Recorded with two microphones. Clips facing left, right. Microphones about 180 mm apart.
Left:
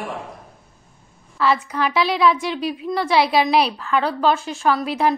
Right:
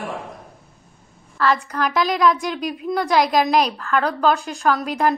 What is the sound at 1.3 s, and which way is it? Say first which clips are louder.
A woman's voice: even; 5° left (ahead or behind).